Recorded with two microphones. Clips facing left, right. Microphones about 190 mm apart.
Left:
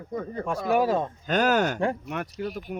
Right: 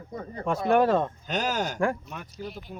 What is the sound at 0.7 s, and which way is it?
Speech, 5° left (ahead or behind).